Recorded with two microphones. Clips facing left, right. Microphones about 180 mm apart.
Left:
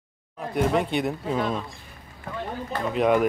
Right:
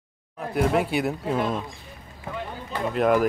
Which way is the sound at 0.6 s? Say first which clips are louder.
Right 1 dB; 5° right (ahead or behind).